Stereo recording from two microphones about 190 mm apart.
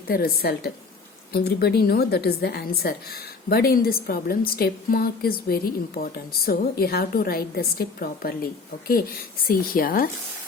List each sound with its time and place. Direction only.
0.1 s a woman's voice: 50° left (ahead or behind)
9.5 s a woman's voice: 50° left (ahead or behind)